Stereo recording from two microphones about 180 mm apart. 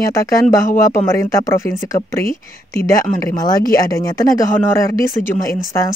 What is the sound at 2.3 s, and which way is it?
Speech, 55° left (ahead or behind).